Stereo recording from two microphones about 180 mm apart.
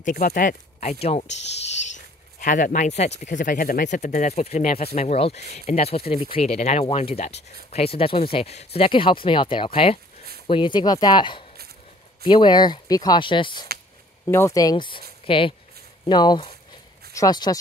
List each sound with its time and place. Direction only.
0.0 s speech: 55° left (ahead or behind); by 1.3 s 35° left (ahead or behind)
2.4 s speech: 45° left (ahead or behind); by 13.7 s 25° left (ahead or behind)
14.2 s speech: 15° left (ahead or behind)